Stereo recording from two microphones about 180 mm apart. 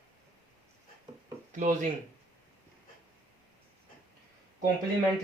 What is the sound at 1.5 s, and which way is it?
Speech, 45° right (ahead or behind).